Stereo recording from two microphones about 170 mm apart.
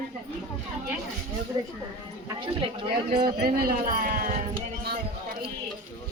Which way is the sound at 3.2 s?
65° right (ahead or behind).